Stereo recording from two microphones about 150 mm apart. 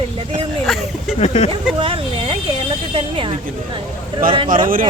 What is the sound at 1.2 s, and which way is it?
Speech, 45° left (ahead or behind).